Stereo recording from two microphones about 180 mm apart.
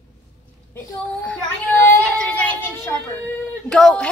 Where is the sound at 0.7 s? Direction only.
10° left (ahead or behind).